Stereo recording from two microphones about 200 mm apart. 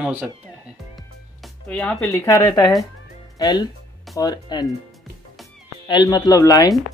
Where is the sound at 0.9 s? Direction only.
Centre (ahead or behind); by 2.7 s 20° left (ahead or behind).